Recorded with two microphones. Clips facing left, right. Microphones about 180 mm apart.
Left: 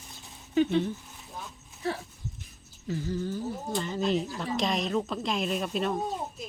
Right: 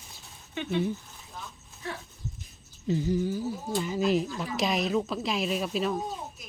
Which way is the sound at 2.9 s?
15° right (ahead or behind).